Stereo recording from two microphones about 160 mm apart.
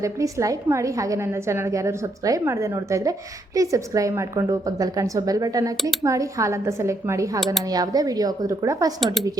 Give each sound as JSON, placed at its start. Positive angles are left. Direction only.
{"t": 0.0, "sound": "a woman's voice", "side_deg": -20}